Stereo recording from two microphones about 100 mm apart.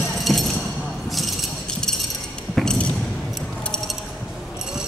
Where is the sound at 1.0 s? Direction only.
Centre (ahead or behind).